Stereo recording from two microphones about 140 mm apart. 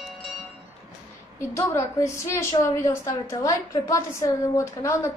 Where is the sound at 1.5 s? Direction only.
20° left (ahead or behind).